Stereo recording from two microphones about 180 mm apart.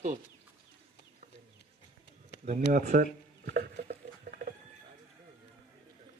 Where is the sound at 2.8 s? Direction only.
55° right (ahead or behind).